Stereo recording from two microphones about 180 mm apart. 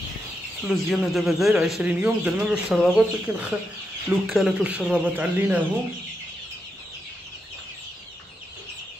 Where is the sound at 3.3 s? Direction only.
15° right (ahead or behind).